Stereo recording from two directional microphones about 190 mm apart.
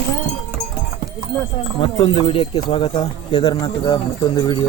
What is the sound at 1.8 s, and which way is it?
Speech, 25° left (ahead or behind).